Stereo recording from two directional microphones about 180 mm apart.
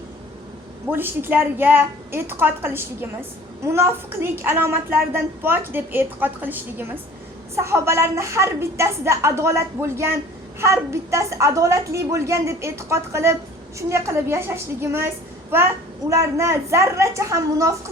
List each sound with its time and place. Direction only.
0.9 s a woman's voice: 10° right (ahead or behind)